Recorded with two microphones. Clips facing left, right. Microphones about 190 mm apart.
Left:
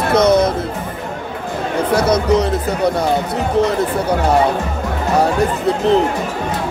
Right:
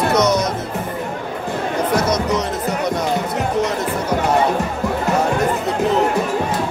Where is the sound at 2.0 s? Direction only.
30° left (ahead or behind).